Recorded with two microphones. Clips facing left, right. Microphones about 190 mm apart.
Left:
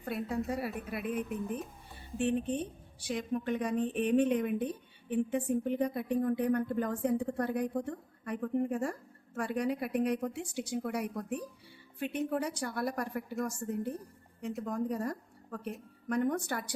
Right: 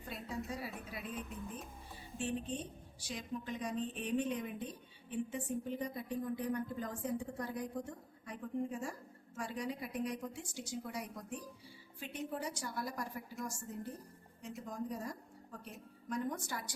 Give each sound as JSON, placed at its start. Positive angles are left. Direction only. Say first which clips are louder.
{"t": 0.0, "sound": "a woman's voice", "louder": "left 9 dB", "side_deg": 60}